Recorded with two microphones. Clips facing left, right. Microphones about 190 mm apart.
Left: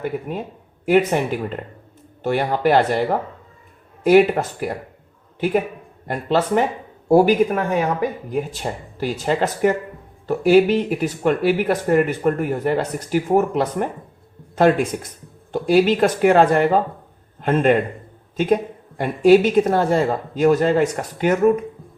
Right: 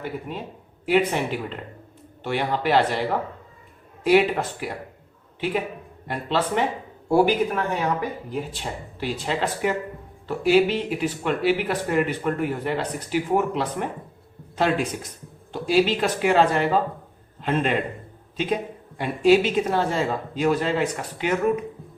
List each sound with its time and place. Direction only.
0.3 s speech: 50° left (ahead or behind)
6.1 s speech: 45° left (ahead or behind)